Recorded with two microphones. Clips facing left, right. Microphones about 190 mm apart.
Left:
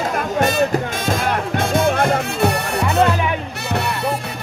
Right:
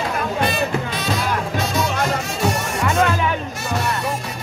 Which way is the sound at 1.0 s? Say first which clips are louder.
Left 3 dB; 50° left (ahead or behind).